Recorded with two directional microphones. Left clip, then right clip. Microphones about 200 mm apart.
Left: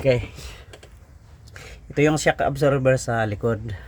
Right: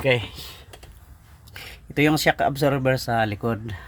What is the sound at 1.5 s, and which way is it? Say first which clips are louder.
Speech: even; 5° right (ahead or behind).